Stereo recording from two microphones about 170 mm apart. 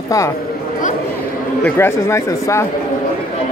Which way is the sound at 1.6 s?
15° left (ahead or behind).